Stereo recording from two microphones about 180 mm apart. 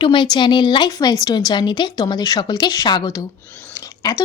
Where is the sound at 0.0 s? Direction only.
25° left (ahead or behind).